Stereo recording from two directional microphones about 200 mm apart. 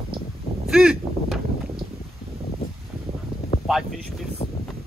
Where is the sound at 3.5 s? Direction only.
35° left (ahead or behind).